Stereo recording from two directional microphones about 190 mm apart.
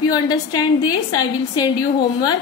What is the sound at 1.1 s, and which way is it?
Speech, 20° left (ahead or behind).